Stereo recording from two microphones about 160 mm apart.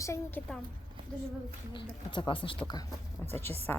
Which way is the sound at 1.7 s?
30° left (ahead or behind).